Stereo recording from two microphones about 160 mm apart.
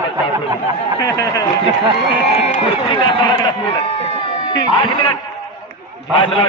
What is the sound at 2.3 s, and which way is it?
A man's voice, 40° left (ahead or behind).